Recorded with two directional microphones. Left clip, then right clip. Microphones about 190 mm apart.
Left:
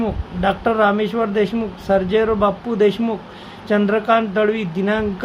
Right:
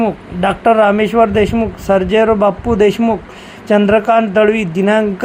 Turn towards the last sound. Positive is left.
turn(degrees=-30)  # may be behind; listen again after turning